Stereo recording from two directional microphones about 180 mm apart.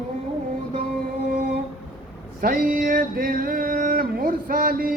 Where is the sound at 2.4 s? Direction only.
50° right (ahead or behind).